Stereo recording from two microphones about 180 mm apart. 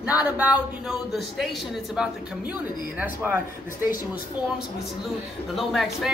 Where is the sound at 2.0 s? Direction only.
5° right (ahead or behind).